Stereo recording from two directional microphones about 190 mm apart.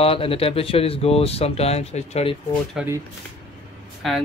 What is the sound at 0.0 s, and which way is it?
Speech, 30° left (ahead or behind).